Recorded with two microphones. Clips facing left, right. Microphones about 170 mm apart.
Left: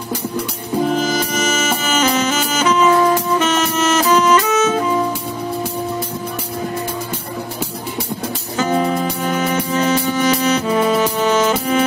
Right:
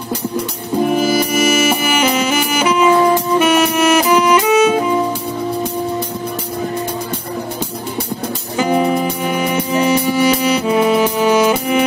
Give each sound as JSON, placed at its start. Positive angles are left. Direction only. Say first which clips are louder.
{"t": 0.8, "sound": "music", "louder": "right 5 dB", "side_deg": -10}
{"t": 8.5, "sound": "music", "louder": "right 3 dB", "side_deg": -10}